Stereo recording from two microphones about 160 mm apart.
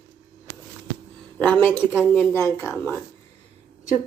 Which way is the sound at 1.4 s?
10° left (ahead or behind).